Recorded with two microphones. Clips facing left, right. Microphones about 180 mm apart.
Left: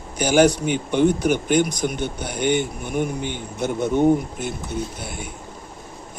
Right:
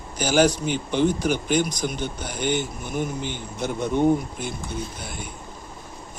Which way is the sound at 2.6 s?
55° left (ahead or behind).